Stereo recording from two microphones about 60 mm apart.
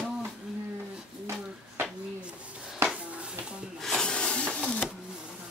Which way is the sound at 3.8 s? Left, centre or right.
Centre.